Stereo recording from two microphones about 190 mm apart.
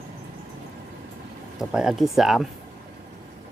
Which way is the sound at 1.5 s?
5° right (ahead or behind).